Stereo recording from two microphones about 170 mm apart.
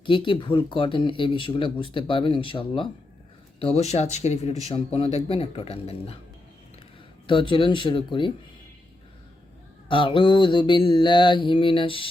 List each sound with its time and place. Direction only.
0.0 s mantra: 30° left (ahead or behind)
3.6 s speech: 35° left (ahead or behind)
7.3 s mantra: 30° left (ahead or behind)
9.9 s mantra: 30° left (ahead or behind)